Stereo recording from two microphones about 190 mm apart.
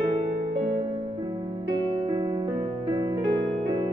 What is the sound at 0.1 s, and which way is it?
Music, 30° right (ahead or behind).